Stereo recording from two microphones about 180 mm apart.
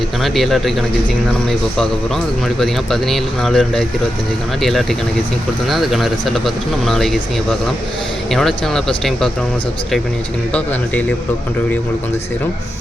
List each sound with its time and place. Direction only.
0.2 s speech: centre (ahead or behind)
2.6 s speech: centre (ahead or behind)
8.3 s speech: centre (ahead or behind)